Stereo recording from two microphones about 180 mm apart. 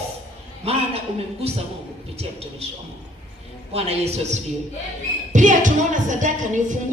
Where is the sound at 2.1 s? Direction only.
35° right (ahead or behind).